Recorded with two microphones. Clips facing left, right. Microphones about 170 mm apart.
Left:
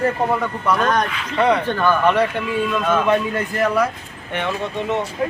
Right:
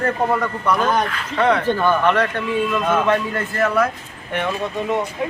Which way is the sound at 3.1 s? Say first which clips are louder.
Left 1 dB; 15° left (ahead or behind).